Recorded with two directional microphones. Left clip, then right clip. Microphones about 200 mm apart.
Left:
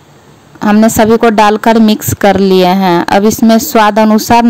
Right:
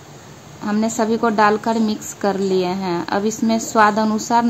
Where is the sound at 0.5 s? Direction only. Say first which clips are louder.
Left 13 dB; 50° left (ahead or behind).